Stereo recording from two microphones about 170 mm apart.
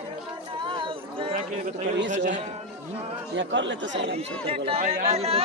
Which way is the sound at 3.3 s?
90° right.